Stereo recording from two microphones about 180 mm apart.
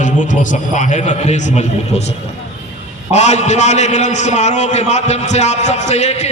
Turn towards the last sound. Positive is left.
turn(degrees=40)  # may be behind; listen again after turning